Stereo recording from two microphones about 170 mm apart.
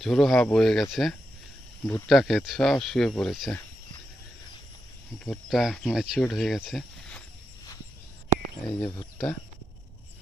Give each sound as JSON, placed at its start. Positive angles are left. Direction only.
{"t": 0.0, "sound": "speech", "side_deg": 0}
{"t": 5.2, "sound": "speech", "side_deg": 0}
{"t": 8.6, "sound": "speech", "side_deg": 10}